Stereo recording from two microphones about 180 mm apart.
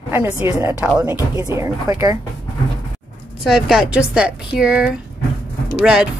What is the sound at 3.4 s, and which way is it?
A woman's voice, centre (ahead or behind).